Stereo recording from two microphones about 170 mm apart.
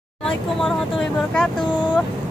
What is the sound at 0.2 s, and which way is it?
Speech, centre (ahead or behind).